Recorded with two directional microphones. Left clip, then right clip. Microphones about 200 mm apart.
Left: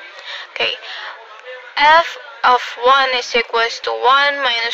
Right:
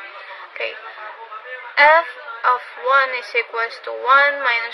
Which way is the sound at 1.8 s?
45° left (ahead or behind).